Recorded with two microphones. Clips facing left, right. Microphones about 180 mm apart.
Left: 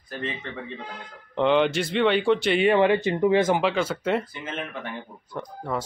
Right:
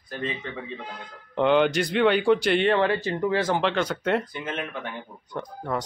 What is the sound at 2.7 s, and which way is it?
Speech, 15° left (ahead or behind).